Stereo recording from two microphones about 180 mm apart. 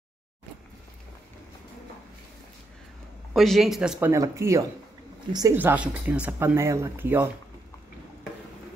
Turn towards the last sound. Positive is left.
turn(degrees=-15)  # may be behind; listen again after turning